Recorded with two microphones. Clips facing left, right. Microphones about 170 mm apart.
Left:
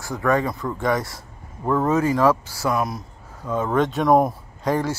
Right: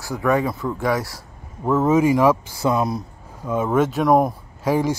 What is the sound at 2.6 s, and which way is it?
Speech, 25° right (ahead or behind).